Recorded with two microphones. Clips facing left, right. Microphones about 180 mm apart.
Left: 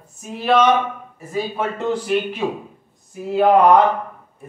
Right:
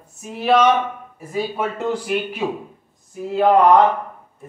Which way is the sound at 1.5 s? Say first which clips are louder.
Left 1 dB; 10° right (ahead or behind).